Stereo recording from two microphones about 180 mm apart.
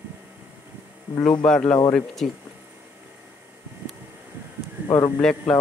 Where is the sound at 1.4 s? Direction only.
5° left (ahead or behind).